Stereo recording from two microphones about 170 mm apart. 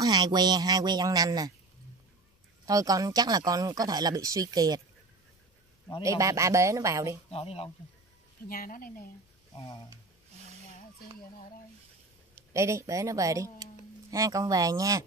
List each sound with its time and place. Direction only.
0.0 s speech: 25° right (ahead or behind)
2.6 s speech: 20° right (ahead or behind)
6.0 s speech: 20° right (ahead or behind)
7.2 s speech: 35° left (ahead or behind)
8.5 s speech: 55° left (ahead or behind)
12.5 s speech: 15° right (ahead or behind)